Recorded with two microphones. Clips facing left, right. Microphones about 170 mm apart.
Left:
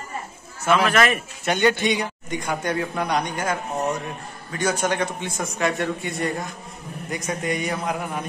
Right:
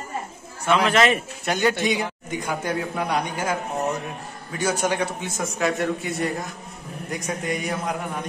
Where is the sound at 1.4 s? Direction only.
Centre (ahead or behind).